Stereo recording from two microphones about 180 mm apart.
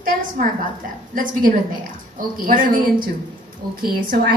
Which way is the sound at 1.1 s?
50° right (ahead or behind).